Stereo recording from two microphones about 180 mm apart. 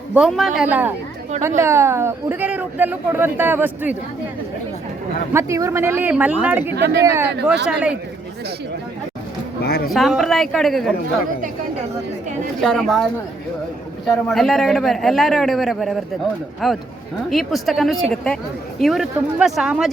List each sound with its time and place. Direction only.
0.1 s a man's voice: centre (ahead or behind)
5.3 s speech: 15° right (ahead or behind)
6.7 s speech: 65° right (ahead or behind)
7.0 s speech: 15° right (ahead or behind)
9.9 s a man's voice: centre (ahead or behind)
12.6 s a man's voice: centre (ahead or behind)
14.2 s a man's voice: centre (ahead or behind)